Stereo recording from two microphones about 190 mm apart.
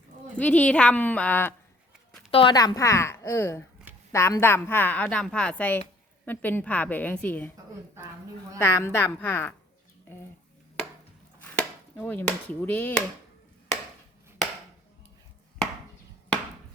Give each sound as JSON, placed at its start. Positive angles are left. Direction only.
{"t": 0.3, "sound": "a woman's voice", "side_deg": 5}
{"t": 2.3, "sound": "a woman's voice", "side_deg": 25}
{"t": 8.5, "sound": "a woman's voice", "side_deg": 10}
{"t": 11.3, "sound": "chopping", "side_deg": 10}